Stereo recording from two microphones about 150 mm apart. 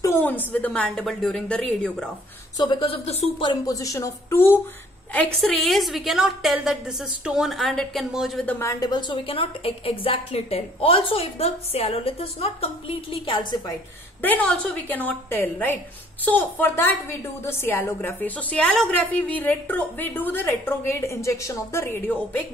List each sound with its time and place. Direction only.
0.0 s a woman's voice: 15° left (ahead or behind)
2.5 s a woman's voice: 30° left (ahead or behind)
3.6 s speech: 20° left (ahead or behind)
5.1 s a woman's voice: centre (ahead or behind)
8.5 s a woman's voice: 20° left (ahead or behind)
14.2 s a woman's voice: 10° left (ahead or behind)